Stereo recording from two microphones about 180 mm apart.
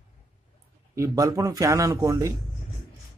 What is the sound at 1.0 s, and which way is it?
Speech, 20° right (ahead or behind).